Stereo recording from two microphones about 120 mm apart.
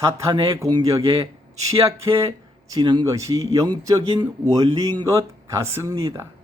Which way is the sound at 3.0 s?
30° right (ahead or behind).